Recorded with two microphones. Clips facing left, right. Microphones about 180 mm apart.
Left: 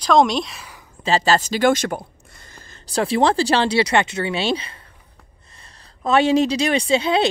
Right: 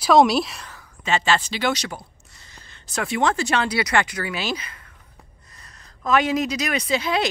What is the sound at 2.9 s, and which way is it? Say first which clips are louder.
Speech: left 5 dB; 30° left (ahead or behind).